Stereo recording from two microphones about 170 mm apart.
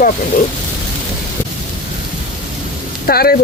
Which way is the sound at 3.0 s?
65° left (ahead or behind).